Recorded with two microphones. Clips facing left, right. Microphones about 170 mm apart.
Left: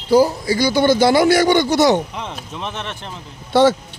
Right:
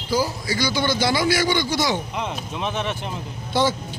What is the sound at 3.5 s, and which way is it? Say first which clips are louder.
Vehicle: left 8 dB; 70° left (ahead or behind).